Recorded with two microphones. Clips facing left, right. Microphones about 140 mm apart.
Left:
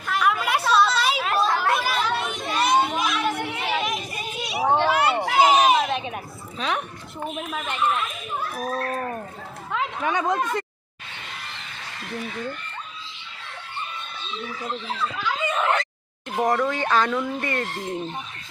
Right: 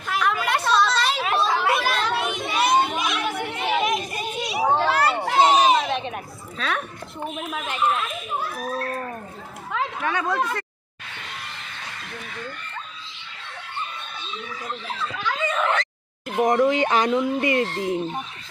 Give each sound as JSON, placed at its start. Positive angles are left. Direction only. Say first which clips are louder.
{"t": 0.1, "sound": "chatter", "louder": "left 1 dB", "side_deg": 0}
{"t": 6.6, "sound": "a woman's voice", "louder": "left 1 dB", "side_deg": 15}
{"t": 7.2, "sound": "speech", "louder": "even", "side_deg": 0}
{"t": 10.0, "sound": "speech", "louder": "left 2 dB", "side_deg": 20}
{"t": 15.2, "sound": "a sound", "louder": "right 2 dB", "side_deg": 10}
{"t": 16.4, "sound": "speech", "louder": "right 4 dB", "side_deg": -15}